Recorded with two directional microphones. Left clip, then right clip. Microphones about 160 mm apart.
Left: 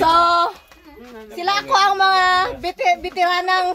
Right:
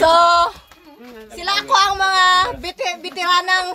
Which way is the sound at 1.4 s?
5° left (ahead or behind).